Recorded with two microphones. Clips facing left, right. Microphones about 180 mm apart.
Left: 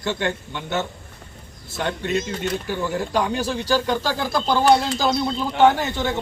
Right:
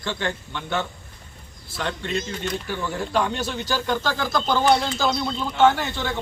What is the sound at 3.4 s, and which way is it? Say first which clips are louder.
Speech: left 5 dB; 35° left (ahead or behind).